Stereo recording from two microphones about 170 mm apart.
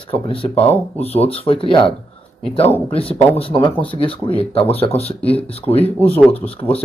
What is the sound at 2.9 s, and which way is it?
Speech, 35° left (ahead or behind).